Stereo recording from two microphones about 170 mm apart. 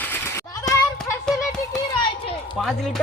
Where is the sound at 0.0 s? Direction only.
15° left (ahead or behind).